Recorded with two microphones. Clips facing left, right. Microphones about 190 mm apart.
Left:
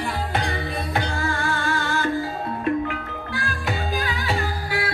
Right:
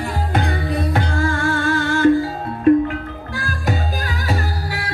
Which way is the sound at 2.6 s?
40° right (ahead or behind).